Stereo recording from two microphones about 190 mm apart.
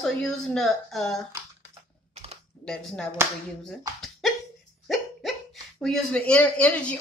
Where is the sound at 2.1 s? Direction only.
30° right (ahead or behind).